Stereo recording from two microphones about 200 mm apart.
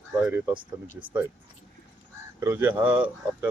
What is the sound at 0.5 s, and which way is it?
Speech, 25° right (ahead or behind).